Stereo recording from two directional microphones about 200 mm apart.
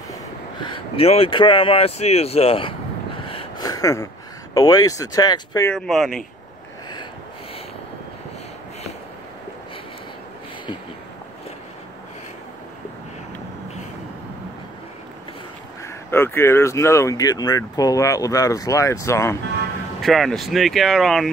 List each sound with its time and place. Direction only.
0.6 s speech: 25° left (ahead or behind)
3.3 s a sound: 25° left (ahead or behind)
4.6 s speech: 20° left (ahead or behind)
5.7 s speech: centre (ahead or behind)
15.8 s speech: 10° left (ahead or behind)
20.0 s speech: centre (ahead or behind)